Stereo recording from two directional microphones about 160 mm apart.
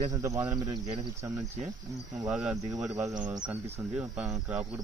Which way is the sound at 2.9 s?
20° right (ahead or behind).